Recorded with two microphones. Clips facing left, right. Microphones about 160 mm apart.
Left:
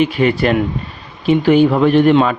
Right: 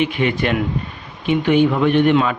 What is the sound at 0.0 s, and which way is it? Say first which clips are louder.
Speech: left 5 dB; 40° left (ahead or behind).